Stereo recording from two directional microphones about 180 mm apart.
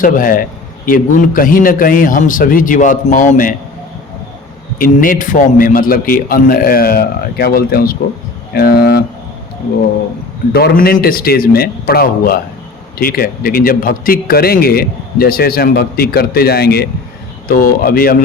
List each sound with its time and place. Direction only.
0.0 s a man's voice: 50° left (ahead or behind)
4.8 s a man's voice: 50° left (ahead or behind)
10.5 s a man's voice: 60° left (ahead or behind)